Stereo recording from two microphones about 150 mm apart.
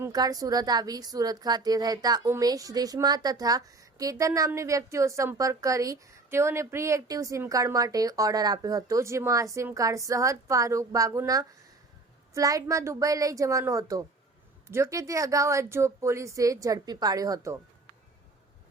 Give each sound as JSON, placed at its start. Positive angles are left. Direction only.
{"t": 0.0, "sound": "speech", "side_deg": -25}